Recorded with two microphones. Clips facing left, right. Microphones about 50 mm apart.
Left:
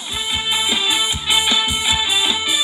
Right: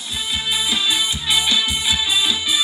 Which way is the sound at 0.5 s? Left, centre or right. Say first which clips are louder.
Left 1 dB; left.